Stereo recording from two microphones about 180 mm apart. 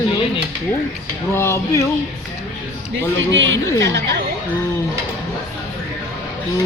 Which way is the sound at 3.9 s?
75° right (ahead or behind).